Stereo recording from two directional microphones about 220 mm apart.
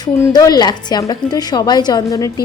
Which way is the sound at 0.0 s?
15° left (ahead or behind).